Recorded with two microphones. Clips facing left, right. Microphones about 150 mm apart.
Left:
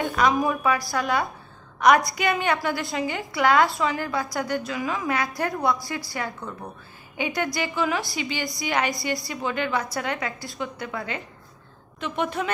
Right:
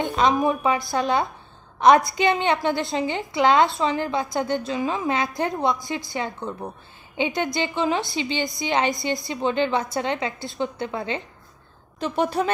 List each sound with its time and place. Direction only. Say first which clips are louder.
0.0 s a woman's voice: right 2 dB; 25° right (ahead or behind)
12.0 s a woman's voice: right 4 dB; 35° right (ahead or behind)